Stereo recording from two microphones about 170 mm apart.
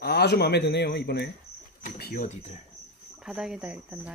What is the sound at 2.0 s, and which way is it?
Speech, 55° left (ahead or behind).